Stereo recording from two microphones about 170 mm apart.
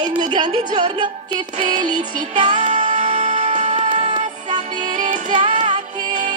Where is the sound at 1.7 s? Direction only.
45° right (ahead or behind).